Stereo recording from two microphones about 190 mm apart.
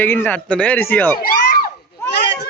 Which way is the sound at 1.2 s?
50° left (ahead or behind).